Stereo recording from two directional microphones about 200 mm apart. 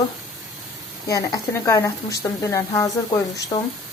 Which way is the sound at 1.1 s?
15° left (ahead or behind).